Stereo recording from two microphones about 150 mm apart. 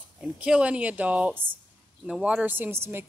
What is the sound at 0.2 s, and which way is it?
Speech, 5° right (ahead or behind).